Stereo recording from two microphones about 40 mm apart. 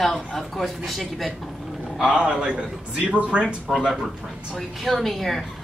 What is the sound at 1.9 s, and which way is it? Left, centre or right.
A man's voice, right.